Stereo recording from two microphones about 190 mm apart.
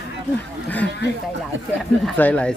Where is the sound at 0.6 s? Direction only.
10° left (ahead or behind).